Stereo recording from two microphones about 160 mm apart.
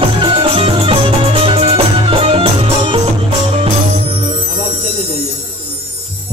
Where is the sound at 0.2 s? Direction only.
30° right (ahead or behind).